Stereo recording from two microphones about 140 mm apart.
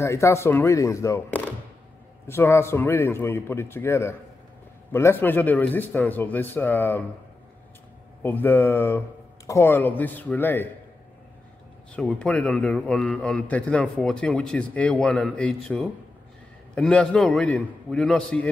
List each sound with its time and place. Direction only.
0.0 s a man's voice: 20° left (ahead or behind)
8.2 s a man's voice: 15° left (ahead or behind)
11.9 s a man's voice: 10° left (ahead or behind)